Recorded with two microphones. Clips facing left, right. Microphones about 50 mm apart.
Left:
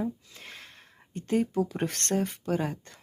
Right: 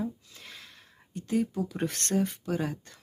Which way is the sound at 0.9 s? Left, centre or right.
Left.